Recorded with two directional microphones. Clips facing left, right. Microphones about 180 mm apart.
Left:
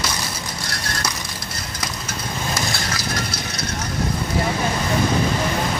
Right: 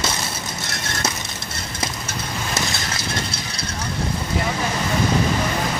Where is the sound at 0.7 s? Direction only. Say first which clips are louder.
Right 1 dB; 25° right (ahead or behind).